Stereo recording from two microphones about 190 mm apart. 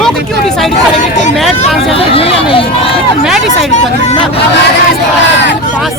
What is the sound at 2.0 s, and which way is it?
Speech, 30° left (ahead or behind).